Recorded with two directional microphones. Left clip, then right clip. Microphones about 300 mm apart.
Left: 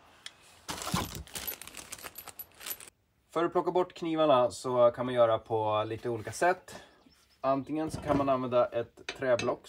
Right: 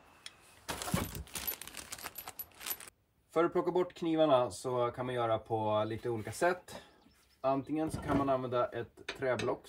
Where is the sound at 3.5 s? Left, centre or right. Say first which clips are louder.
Left 4 dB; centre.